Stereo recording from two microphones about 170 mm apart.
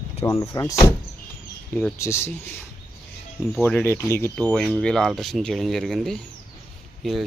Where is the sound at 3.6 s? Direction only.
10° left (ahead or behind).